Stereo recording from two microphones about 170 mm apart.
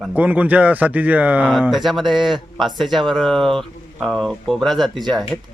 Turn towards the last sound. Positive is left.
turn(degrees=0)  # may be behind; listen again after turning